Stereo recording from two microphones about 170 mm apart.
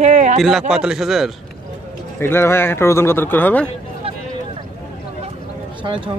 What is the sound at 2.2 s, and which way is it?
Speech, 15° left (ahead or behind).